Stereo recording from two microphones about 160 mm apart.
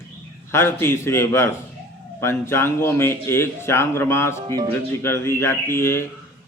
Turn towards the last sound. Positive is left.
turn(degrees=15)  # may be behind; listen again after turning